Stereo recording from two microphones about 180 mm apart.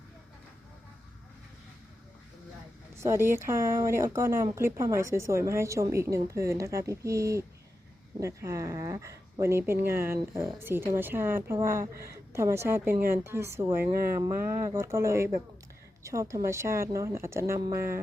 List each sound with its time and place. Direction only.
2.9 s speech: 15° right (ahead or behind)